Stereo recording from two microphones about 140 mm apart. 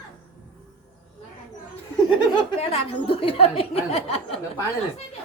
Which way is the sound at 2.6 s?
45° left (ahead or behind).